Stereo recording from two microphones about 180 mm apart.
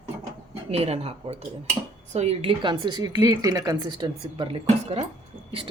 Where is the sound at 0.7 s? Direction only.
35° right (ahead or behind).